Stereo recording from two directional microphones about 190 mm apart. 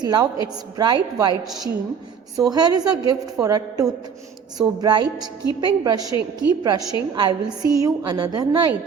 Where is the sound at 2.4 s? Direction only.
20° right (ahead or behind).